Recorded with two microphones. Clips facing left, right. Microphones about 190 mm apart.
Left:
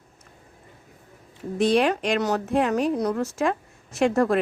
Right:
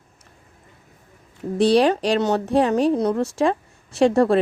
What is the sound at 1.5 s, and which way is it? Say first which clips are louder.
Speech: right 4 dB; 35° right (ahead or behind).